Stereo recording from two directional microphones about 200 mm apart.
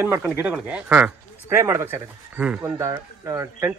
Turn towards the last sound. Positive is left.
turn(degrees=-15)  # may be behind; listen again after turning